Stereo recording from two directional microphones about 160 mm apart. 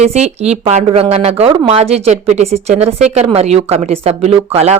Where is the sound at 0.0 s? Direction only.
45° right (ahead or behind).